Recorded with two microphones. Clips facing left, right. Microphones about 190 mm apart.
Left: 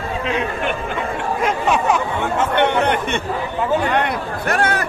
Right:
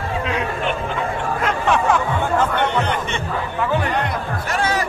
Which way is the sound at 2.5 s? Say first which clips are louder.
Left 4 dB; 65° left (ahead or behind).